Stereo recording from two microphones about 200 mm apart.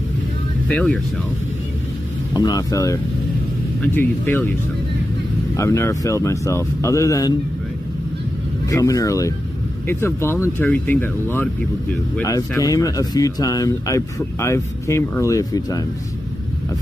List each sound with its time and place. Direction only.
0.7 s speech: 5° left (ahead or behind)
2.3 s speech: 20° left (ahead or behind)
5.6 s speech: 15° left (ahead or behind)
8.6 s speech: 15° left (ahead or behind)